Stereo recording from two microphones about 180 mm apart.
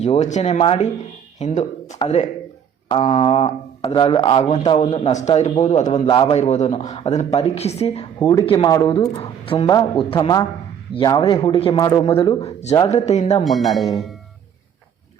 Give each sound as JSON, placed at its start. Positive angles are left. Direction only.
{"t": 0.0, "sound": "speech", "side_deg": 40}
{"t": 2.9, "sound": "speech", "side_deg": 30}
{"t": 6.1, "sound": "a woman's voice", "side_deg": 25}
{"t": 6.4, "sound": "speech", "side_deg": 40}
{"t": 8.2, "sound": "a woman's voice", "side_deg": 15}
{"t": 12.4, "sound": "speech", "side_deg": 35}
{"t": 13.4, "sound": "speech", "side_deg": 0}